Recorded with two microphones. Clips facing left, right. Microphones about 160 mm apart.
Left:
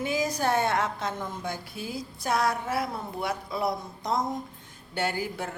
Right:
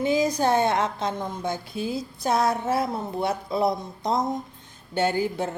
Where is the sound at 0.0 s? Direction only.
20° right (ahead or behind).